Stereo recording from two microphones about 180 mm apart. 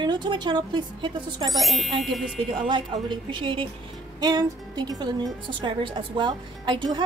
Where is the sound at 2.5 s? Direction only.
25° right (ahead or behind).